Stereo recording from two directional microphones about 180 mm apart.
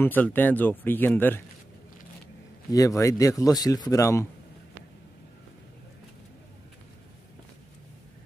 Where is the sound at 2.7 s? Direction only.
20° left (ahead or behind).